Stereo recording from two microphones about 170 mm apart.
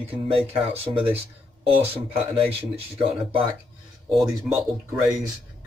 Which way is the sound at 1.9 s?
35° right (ahead or behind).